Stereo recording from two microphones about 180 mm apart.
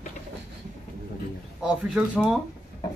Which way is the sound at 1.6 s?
5° right (ahead or behind).